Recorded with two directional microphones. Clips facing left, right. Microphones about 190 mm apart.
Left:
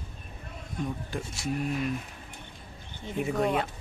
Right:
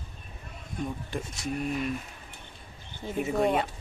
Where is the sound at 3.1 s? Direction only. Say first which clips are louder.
Right 1 dB; centre (ahead or behind).